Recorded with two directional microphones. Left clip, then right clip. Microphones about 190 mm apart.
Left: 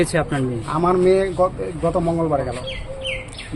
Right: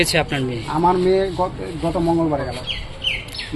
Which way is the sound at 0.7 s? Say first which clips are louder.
Even; 20° left (ahead or behind).